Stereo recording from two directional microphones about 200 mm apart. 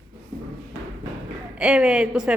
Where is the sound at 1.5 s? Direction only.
5° right (ahead or behind).